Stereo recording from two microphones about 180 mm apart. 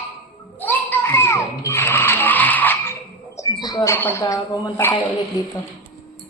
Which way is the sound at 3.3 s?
20° left (ahead or behind).